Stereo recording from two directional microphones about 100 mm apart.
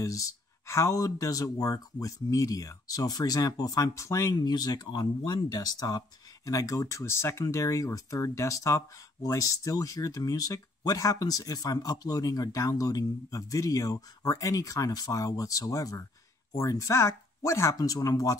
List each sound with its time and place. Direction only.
0.0 s speech: 35° left (ahead or behind)
4.4 s speech: 45° left (ahead or behind)